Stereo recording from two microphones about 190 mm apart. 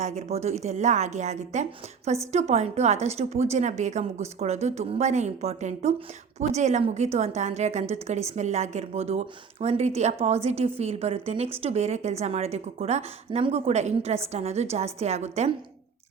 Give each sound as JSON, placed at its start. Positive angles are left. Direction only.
{"t": 0.0, "sound": "a woman's voice", "side_deg": -35}